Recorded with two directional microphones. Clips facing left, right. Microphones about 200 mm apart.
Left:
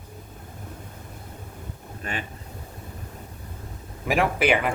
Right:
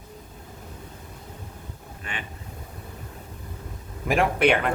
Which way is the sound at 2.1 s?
40° left (ahead or behind).